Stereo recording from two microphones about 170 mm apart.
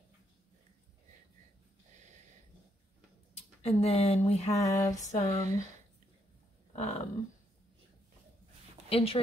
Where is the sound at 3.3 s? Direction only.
40° left (ahead or behind).